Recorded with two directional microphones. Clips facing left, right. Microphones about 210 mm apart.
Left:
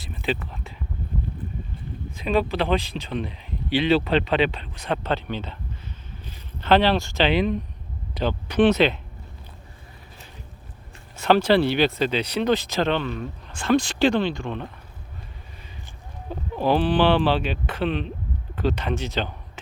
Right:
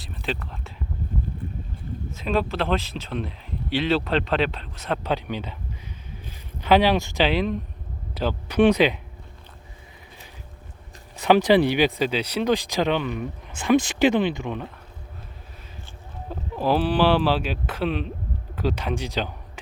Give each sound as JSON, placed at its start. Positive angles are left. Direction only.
{"t": 0.0, "sound": "music", "side_deg": 0}
{"t": 2.1, "sound": "speech", "side_deg": 0}
{"t": 6.6, "sound": "speech", "side_deg": -10}
{"t": 7.3, "sound": "speech", "side_deg": 0}
{"t": 11.2, "sound": "speech", "side_deg": -15}
{"t": 16.3, "sound": "speech", "side_deg": 0}